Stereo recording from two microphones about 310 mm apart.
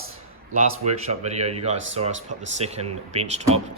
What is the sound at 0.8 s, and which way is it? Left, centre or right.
Speech, right.